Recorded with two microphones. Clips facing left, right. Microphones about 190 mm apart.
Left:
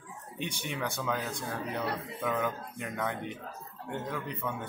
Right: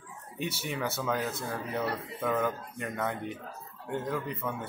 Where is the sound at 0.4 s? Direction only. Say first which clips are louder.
Right 2 dB; 5° right (ahead or behind).